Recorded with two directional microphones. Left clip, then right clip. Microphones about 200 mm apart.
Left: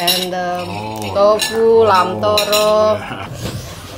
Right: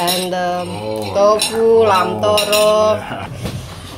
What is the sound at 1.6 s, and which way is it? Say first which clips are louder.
Speech: left 1 dB; 5° left (ahead or behind).